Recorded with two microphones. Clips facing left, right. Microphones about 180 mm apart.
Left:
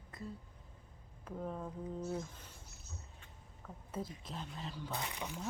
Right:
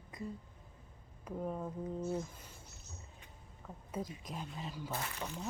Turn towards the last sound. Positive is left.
turn(degrees=10)  # may be behind; listen again after turning